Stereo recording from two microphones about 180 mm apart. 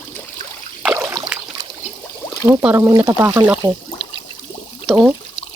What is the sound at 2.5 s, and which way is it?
Speech, 15° right (ahead or behind).